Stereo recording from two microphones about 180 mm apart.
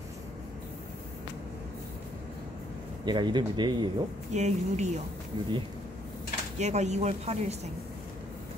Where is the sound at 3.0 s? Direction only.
25° right (ahead or behind).